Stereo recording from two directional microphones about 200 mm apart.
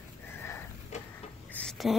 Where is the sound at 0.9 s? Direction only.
35° left (ahead or behind).